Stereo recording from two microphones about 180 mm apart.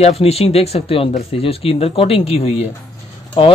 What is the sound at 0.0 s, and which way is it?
Speech, 35° left (ahead or behind).